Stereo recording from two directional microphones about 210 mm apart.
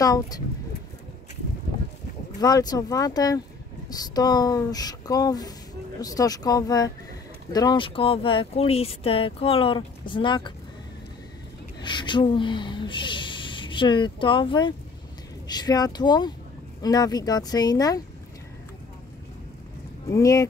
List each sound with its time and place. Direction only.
0.0 s speech: 15° left (ahead or behind)
2.4 s speech: 20° left (ahead or behind)
11.8 s speech: 20° left (ahead or behind)
20.1 s speech: 15° left (ahead or behind)